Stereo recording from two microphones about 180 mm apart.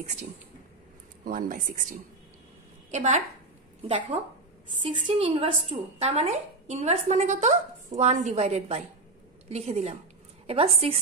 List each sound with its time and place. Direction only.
0.0 s a woman's voice: 40° right (ahead or behind)
1.2 s a woman's voice: 50° right (ahead or behind); by 10.7 s 30° right (ahead or behind)